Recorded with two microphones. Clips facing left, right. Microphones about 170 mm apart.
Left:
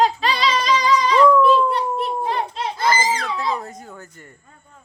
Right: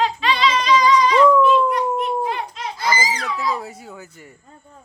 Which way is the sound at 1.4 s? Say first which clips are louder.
Even; 30° left (ahead or behind).